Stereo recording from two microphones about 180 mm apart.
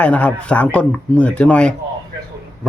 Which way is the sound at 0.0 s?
5° left (ahead or behind).